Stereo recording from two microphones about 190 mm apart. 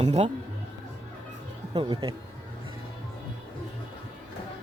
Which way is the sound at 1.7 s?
25° right (ahead or behind).